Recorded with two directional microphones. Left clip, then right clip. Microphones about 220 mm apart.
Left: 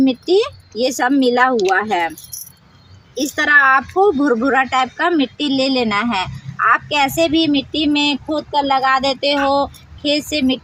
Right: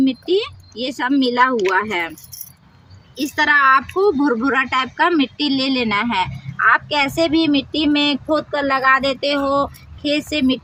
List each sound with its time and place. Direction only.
0.0 s a woman's voice: 20° left (ahead or behind)
3.2 s a woman's voice: 15° left (ahead or behind)